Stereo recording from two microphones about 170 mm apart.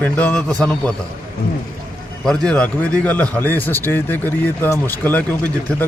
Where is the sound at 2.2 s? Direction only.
5° left (ahead or behind).